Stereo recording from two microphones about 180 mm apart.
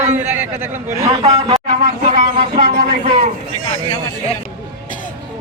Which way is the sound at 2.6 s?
50° right (ahead or behind).